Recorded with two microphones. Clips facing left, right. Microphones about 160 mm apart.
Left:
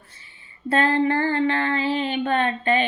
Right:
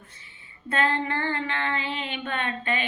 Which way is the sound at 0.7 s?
35° left (ahead or behind).